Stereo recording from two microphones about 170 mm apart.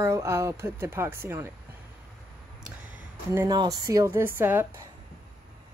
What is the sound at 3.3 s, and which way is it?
Speech, 20° right (ahead or behind).